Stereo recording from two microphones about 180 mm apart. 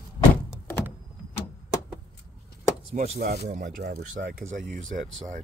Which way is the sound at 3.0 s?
55° right (ahead or behind).